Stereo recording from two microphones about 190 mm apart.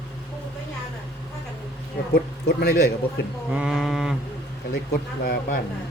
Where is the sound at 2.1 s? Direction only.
55° left (ahead or behind).